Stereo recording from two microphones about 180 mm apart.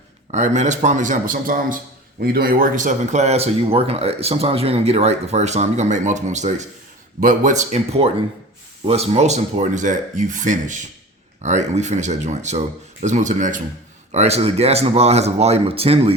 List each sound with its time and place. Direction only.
0.3 s speech: 40° right (ahead or behind)